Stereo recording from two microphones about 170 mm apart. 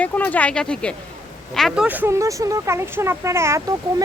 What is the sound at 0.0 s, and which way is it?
Speech, 10° left (ahead or behind).